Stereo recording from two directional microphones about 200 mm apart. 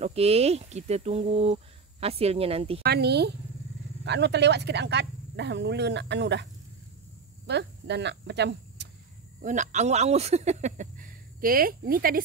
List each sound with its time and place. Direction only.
0.0 s speech: 30° right (ahead or behind)
2.8 s speech: 55° right (ahead or behind)
7.4 s speech: 60° right (ahead or behind)
9.4 s speech: 35° right (ahead or behind)